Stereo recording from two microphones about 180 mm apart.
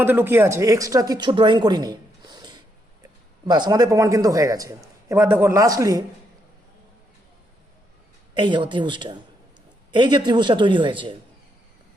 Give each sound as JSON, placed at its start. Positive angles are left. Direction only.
{"t": 0.0, "sound": "speech", "side_deg": -10}
{"t": 8.4, "sound": "a man's voice", "side_deg": -25}